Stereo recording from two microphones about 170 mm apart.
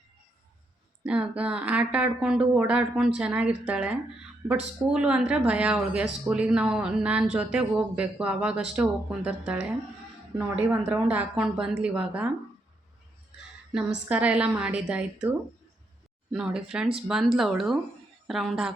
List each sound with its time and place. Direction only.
1.0 s speech: 5° right (ahead or behind)
13.7 s speech: 5° right (ahead or behind)